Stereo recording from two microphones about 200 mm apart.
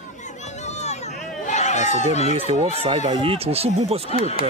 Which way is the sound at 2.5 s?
30° right (ahead or behind).